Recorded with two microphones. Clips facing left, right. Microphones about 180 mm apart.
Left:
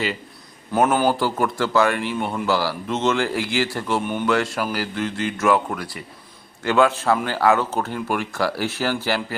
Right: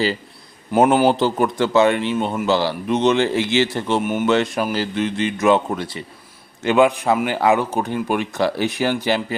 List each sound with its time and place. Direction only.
0.7 s speech: 15° right (ahead or behind)
4.0 s speech: 10° right (ahead or behind)
4.3 s speech: 20° right (ahead or behind)